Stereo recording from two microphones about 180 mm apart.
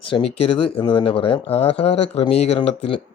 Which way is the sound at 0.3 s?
30° left (ahead or behind).